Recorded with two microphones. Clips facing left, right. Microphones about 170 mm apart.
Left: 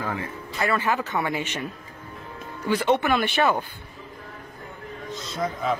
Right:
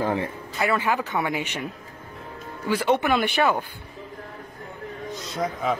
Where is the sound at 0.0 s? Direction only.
30° right (ahead or behind).